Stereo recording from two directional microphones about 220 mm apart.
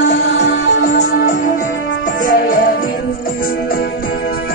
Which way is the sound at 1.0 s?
40° left (ahead or behind).